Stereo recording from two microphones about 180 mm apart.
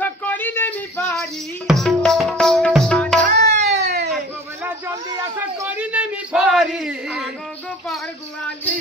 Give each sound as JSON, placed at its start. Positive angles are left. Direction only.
{"t": 0.0, "sound": "music", "side_deg": 10}
{"t": 3.3, "sound": "music", "side_deg": -65}
{"t": 5.4, "sound": "a sound", "side_deg": -10}